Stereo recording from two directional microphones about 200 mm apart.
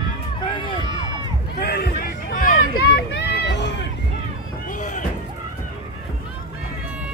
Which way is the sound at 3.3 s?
55° left (ahead or behind).